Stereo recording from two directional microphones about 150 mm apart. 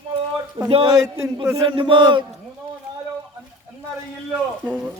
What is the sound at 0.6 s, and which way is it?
Speech, 35° right (ahead or behind).